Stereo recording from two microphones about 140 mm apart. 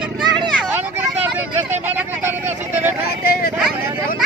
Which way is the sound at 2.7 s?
15° right (ahead or behind).